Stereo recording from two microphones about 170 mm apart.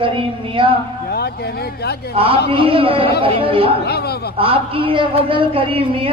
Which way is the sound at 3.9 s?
70° left (ahead or behind).